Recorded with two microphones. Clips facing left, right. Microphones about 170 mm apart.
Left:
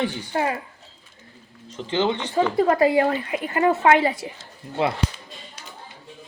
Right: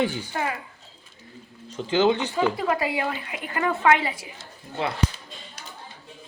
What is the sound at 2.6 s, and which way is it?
A woman's voice, 40° left (ahead or behind).